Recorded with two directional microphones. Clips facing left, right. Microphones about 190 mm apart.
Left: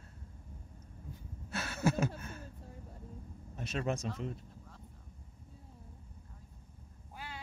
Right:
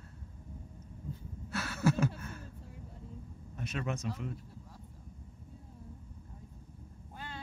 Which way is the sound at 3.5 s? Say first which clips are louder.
Left 2 dB; 30° left (ahead or behind).